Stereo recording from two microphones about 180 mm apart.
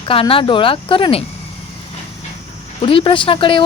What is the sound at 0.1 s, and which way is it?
Speech, 30° left (ahead or behind).